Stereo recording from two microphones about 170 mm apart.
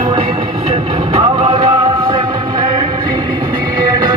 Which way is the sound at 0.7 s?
30° right (ahead or behind).